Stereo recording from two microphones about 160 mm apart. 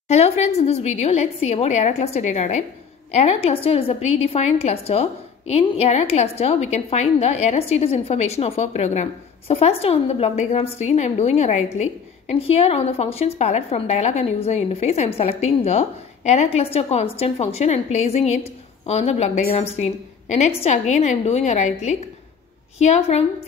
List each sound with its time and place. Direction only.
0.1 s a woman's voice: 40° left (ahead or behind)